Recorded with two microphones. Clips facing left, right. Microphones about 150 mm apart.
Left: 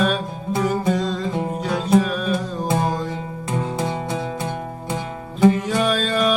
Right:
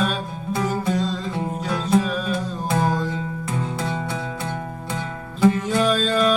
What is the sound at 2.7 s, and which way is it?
Music, 20° left (ahead or behind).